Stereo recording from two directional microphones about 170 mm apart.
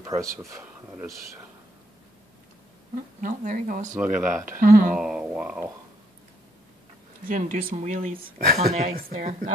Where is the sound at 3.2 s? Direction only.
50° right (ahead or behind).